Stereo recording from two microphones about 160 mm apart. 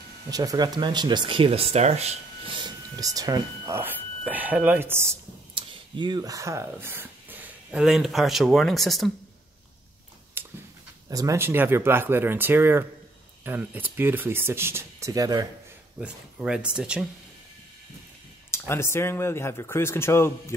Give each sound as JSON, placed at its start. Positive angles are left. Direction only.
{"t": 0.3, "sound": "speech", "side_deg": -25}
{"t": 2.6, "sound": "speech", "side_deg": -20}
{"t": 5.5, "sound": "speech", "side_deg": -30}
{"t": 10.4, "sound": "a sound", "side_deg": -15}
{"t": 11.1, "sound": "speech", "side_deg": -20}
{"t": 16.0, "sound": "speech", "side_deg": -5}
{"t": 18.5, "sound": "speech", "side_deg": 15}